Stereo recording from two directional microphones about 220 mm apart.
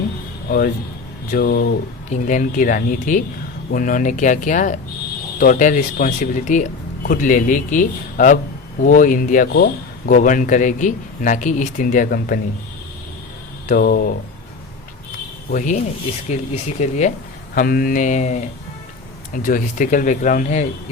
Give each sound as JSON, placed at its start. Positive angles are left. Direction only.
{"t": 0.4, "sound": "speech", "side_deg": 45}
{"t": 13.7, "sound": "speech", "side_deg": 40}
{"t": 15.4, "sound": "speech", "side_deg": 35}
{"t": 16.8, "sound": "speech", "side_deg": 30}